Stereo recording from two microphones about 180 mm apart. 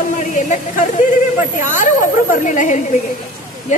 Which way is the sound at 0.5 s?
45° left (ahead or behind).